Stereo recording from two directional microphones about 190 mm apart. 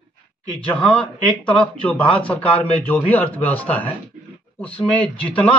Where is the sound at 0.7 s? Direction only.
5° left (ahead or behind).